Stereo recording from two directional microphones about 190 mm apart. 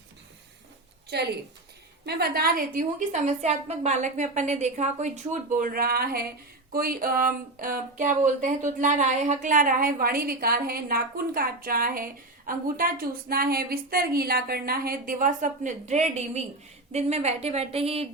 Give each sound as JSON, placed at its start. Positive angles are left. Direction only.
{"t": 1.1, "sound": "a woman's voice", "side_deg": -60}